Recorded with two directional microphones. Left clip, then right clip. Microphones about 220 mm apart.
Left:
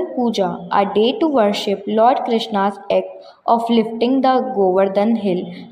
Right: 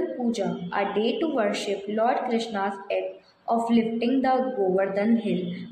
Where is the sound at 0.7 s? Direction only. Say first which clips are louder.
Left 10 dB; 30° left (ahead or behind).